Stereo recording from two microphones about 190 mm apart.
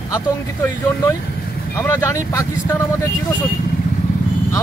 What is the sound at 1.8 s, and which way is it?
Speech, 15° left (ahead or behind).